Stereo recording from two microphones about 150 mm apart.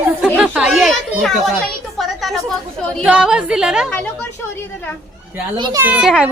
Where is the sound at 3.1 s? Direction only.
5° right (ahead or behind).